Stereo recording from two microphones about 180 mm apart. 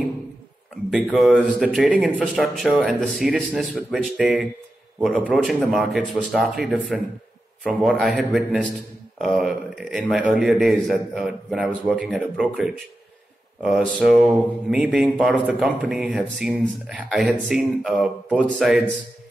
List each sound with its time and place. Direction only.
0.8 s speech: centre (ahead or behind)
7.6 s speech: 5° right (ahead or behind)